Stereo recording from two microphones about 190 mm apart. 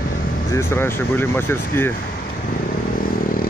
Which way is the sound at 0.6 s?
10° left (ahead or behind).